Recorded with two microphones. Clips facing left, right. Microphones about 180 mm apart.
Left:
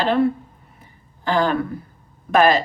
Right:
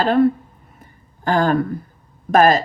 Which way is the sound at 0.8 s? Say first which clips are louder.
Right 4 dB; 45° right (ahead or behind).